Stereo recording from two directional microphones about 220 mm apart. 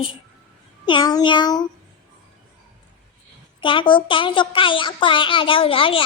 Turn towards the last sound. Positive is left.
turn(degrees=25)  # may be behind; listen again after turning